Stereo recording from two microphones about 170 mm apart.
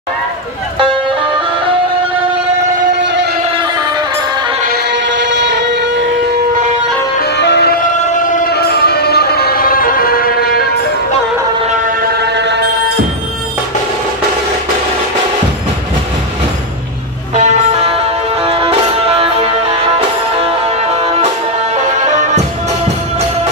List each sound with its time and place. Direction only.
3.5 s music: 25° right (ahead or behind)
4.7 s music: 90° right
7.2 s music: 80° left
8.0 s music: 45° left (ahead or behind)
11.7 s vehicle: 55° right (ahead or behind); by 12.9 s 80° right
17.3 s music: 45° right (ahead or behind)